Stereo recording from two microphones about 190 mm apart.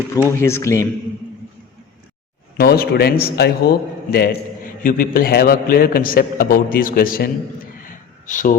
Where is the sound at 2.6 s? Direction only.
55° left (ahead or behind).